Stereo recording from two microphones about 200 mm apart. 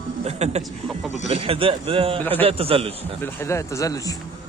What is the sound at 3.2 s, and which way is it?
Speech, 10° left (ahead or behind).